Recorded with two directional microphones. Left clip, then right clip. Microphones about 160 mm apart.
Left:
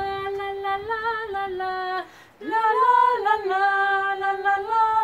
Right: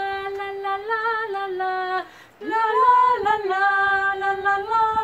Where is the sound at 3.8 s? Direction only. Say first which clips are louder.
Right 2 dB; 20° left (ahead or behind).